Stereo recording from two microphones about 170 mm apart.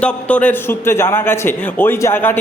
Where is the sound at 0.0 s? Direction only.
5° left (ahead or behind).